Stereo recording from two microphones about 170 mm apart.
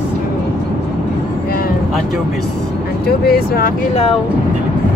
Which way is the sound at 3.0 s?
65° left (ahead or behind).